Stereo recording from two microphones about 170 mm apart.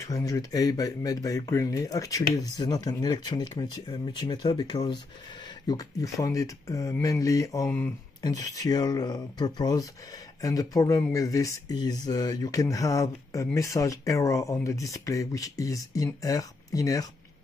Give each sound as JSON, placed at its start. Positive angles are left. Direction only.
{"t": 0.0, "sound": "speech", "side_deg": 20}
{"t": 7.6, "sound": "speech", "side_deg": 10}
{"t": 8.2, "sound": "speech", "side_deg": 20}